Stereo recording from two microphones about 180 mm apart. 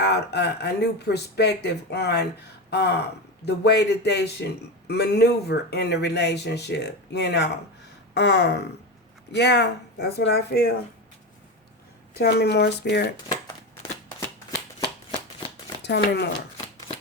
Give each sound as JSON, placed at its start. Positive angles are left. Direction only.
{"t": 0.0, "sound": "speech", "side_deg": 70}
{"t": 2.6, "sound": "a sound", "side_deg": 65}
{"t": 3.4, "sound": "speech", "side_deg": 70}
{"t": 12.1, "sound": "speech", "side_deg": 65}
{"t": 15.8, "sound": "speech", "side_deg": 70}